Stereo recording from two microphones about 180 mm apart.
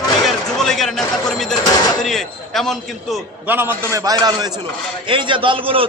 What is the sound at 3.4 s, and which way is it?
A man's voice, 10° right (ahead or behind).